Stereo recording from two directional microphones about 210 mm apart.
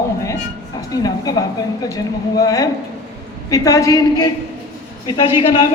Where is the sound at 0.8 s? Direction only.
15° left (ahead or behind).